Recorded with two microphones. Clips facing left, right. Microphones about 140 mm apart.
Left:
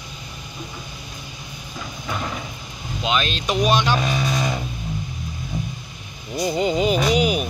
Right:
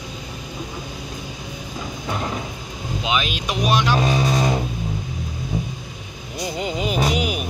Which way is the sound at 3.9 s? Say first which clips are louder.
Right 3 dB; 30° right (ahead or behind).